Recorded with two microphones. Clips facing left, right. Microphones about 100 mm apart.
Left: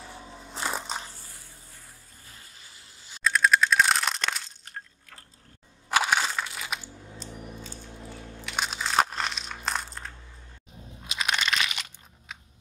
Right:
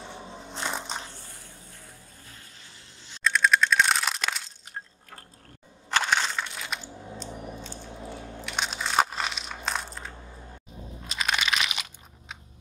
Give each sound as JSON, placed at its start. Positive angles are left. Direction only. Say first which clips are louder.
{"t": 0.0, "sound": "crushing", "louder": "right 3 dB", "side_deg": -25}
{"t": 0.5, "sound": "crushing", "louder": "left 1 dB", "side_deg": 5}
{"t": 2.2, "sound": "a sound", "louder": "right 1 dB", "side_deg": 5}
{"t": 5.9, "sound": "crushing", "louder": "left 1 dB", "side_deg": 10}
{"t": 7.7, "sound": "biting", "louder": "right 4 dB", "side_deg": -25}
{"t": 8.5, "sound": "crushing", "louder": "left 1 dB", "side_deg": 0}
{"t": 11.1, "sound": "crunch", "louder": "even", "side_deg": 0}